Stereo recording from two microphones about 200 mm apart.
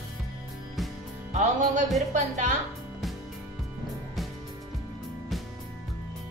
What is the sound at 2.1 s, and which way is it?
Speech, 35° right (ahead or behind).